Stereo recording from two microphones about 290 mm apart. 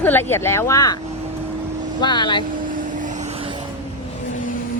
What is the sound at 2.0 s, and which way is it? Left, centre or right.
Speech, centre.